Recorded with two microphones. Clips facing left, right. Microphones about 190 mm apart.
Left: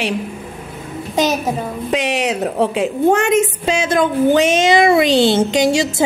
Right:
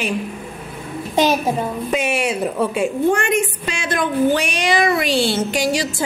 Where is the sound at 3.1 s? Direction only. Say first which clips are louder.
Left 4 dB; 25° left (ahead or behind).